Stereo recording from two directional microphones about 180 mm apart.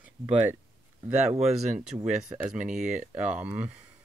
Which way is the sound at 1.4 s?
35° right (ahead or behind).